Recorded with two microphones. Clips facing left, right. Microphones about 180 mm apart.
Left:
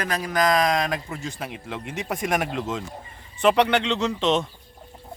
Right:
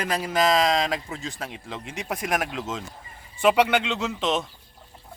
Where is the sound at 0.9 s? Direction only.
Centre (ahead or behind).